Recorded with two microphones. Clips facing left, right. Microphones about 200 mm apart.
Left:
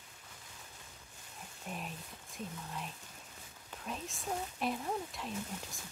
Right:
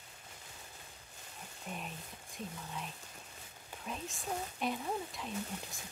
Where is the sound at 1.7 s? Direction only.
Centre (ahead or behind).